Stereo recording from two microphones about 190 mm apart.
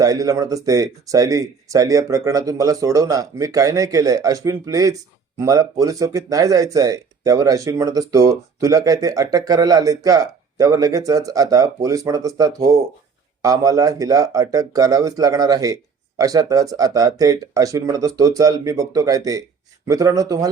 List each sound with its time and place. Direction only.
0.0 s speech: 20° right (ahead or behind)